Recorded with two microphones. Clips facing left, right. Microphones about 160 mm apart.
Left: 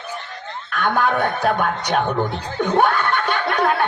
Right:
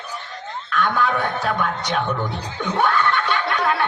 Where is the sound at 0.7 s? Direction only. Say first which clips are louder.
Left 2 dB; 50° left (ahead or behind).